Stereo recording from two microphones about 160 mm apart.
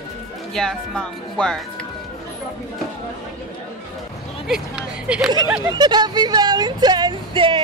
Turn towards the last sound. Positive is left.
turn(degrees=-30)  # may be behind; listen again after turning